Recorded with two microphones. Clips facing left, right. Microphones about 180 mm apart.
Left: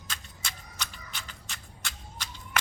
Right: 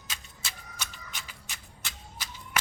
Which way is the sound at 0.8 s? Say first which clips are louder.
Left 1 dB; 10° right (ahead or behind).